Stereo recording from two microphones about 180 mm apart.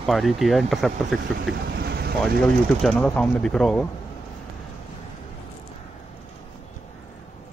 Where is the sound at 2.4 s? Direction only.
5° left (ahead or behind).